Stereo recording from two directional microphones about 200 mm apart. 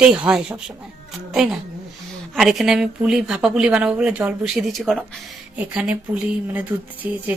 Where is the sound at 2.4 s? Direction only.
Centre (ahead or behind).